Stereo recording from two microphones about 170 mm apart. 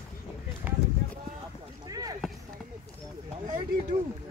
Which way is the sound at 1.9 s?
20° right (ahead or behind).